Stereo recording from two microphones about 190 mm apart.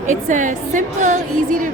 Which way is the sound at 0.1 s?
40° right (ahead or behind).